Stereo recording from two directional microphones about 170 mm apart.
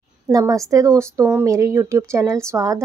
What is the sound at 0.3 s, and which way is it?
Speech, 20° right (ahead or behind).